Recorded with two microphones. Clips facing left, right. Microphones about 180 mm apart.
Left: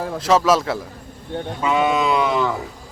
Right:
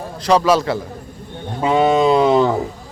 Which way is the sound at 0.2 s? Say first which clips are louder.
Right 2 dB; 5° left (ahead or behind).